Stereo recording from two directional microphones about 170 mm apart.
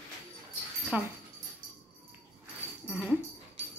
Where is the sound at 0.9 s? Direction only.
10° right (ahead or behind).